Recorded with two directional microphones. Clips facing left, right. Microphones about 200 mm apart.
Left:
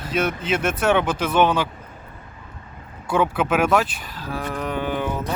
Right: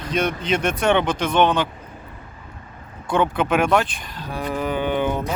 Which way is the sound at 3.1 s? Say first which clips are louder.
Right 1 dB; 5° left (ahead or behind).